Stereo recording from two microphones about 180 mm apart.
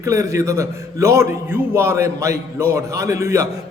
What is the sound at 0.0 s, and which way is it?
A man's voice, 15° right (ahead or behind).